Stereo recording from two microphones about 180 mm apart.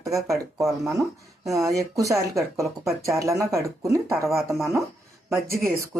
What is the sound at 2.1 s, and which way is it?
Speech, 15° right (ahead or behind).